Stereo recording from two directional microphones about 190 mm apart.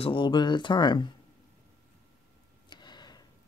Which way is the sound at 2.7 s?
20° left (ahead or behind).